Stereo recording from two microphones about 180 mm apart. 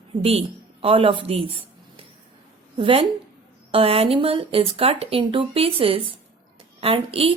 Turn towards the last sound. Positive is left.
turn(degrees=-30)  # may be behind; listen again after turning